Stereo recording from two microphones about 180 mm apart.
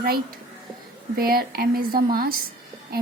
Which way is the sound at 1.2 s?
55° right (ahead or behind).